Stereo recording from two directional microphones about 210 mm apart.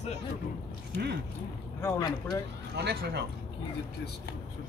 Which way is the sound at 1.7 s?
15° left (ahead or behind).